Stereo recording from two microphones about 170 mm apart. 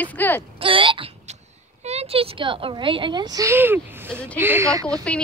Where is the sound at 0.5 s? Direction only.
30° right (ahead or behind).